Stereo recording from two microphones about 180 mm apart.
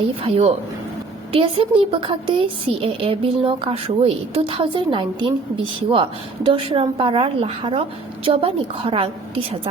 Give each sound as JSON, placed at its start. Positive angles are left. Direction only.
{"t": 0.3, "sound": "a woman's voice", "side_deg": -35}